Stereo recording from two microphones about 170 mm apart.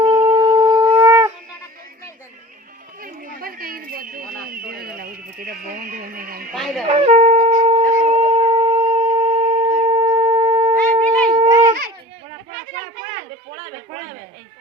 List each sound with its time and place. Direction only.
0.0 s shofar: 30° right (ahead or behind)
1.0 s shofar: 15° right (ahead or behind)
3.0 s a sound: 60° right (ahead or behind)
6.5 s wind instrument: centre (ahead or behind)
6.8 s shofar: 40° right (ahead or behind)
11.3 s a sound: 25° right (ahead or behind)